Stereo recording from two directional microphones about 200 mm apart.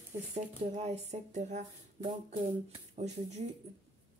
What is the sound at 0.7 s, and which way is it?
Speech, 35° right (ahead or behind).